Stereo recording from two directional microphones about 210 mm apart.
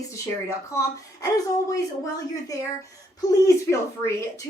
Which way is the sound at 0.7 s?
15° left (ahead or behind).